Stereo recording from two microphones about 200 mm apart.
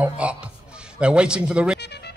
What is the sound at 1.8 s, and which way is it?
Music, 55° left (ahead or behind).